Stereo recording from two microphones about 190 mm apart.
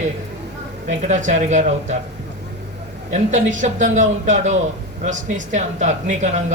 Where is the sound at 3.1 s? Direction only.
40° right (ahead or behind).